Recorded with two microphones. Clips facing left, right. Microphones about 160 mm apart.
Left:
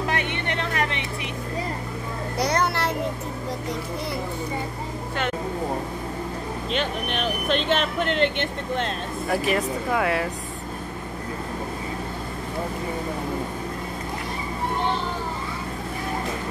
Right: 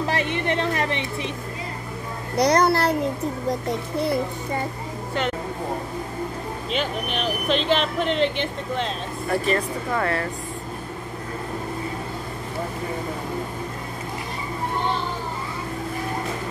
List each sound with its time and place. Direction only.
0.1 s a sound: 30° right (ahead or behind)
2.3 s a child's voice: 35° right (ahead or behind)
6.7 s speech: centre (ahead or behind)